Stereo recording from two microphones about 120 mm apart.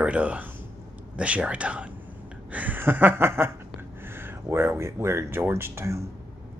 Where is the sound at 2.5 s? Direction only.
15° right (ahead or behind).